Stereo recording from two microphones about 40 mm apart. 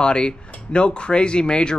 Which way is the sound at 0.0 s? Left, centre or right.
Left.